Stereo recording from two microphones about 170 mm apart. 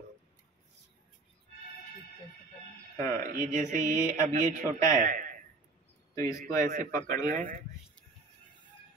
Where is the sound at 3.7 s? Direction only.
20° left (ahead or behind).